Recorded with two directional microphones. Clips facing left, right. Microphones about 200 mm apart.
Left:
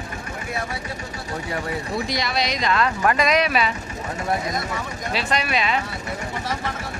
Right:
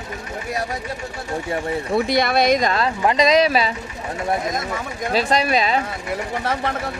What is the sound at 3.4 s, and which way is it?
Speech, 35° right (ahead or behind).